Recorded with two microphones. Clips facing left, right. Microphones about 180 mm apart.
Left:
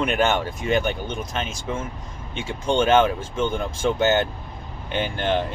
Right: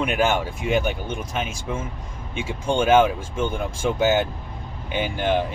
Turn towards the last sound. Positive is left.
turn(degrees=-10)  # may be behind; listen again after turning